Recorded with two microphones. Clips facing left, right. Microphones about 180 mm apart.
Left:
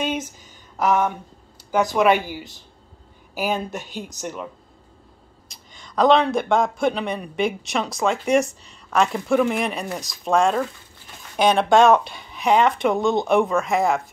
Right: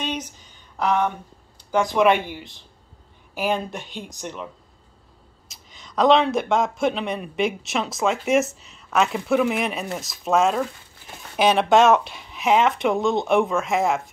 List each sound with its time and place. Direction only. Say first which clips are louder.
0.1 s a sound: left 3 dB; 50° left (ahead or behind)
0.7 s speech: left 2 dB; 5° left (ahead or behind)
2.2 s a man's voice: left 2 dB; 5° left (ahead or behind)
5.5 s a man's voice: left 1 dB; centre (ahead or behind)